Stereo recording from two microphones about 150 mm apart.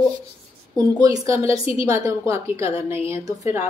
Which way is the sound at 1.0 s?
20° right (ahead or behind).